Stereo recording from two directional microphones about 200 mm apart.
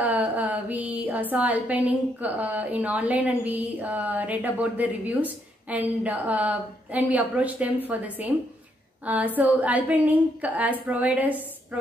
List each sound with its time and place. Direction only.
0.0 s music: 10° right (ahead or behind)
1.3 s a woman's voice: 5° right (ahead or behind)